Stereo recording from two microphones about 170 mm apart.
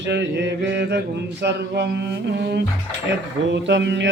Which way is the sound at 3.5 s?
90° right.